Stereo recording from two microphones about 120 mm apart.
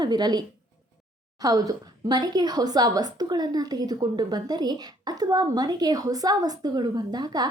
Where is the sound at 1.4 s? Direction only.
30° right (ahead or behind).